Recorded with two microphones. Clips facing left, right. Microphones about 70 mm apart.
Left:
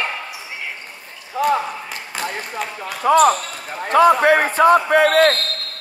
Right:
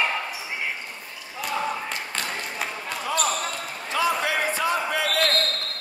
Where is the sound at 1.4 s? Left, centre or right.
Left.